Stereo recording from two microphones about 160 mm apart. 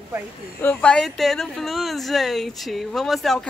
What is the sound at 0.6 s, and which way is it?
Speech, 10° left (ahead or behind).